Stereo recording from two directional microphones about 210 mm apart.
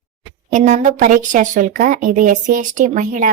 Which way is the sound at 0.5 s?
35° right (ahead or behind).